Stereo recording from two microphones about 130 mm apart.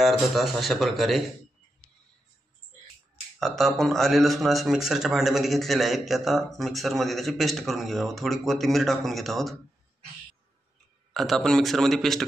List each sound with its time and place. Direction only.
0.0 s speech: centre (ahead or behind)
3.3 s speech: centre (ahead or behind)
11.1 s speech: centre (ahead or behind)